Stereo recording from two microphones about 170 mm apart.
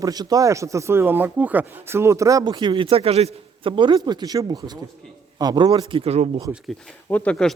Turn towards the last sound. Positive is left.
turn(degrees=5)  # may be behind; listen again after turning